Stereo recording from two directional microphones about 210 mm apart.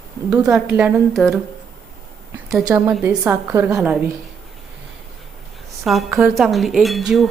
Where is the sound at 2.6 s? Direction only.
10° right (ahead or behind).